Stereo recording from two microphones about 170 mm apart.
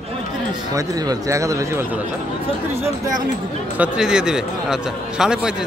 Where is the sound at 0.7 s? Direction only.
20° right (ahead or behind).